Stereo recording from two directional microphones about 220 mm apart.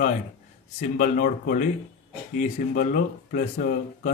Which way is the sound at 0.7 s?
40° left (ahead or behind).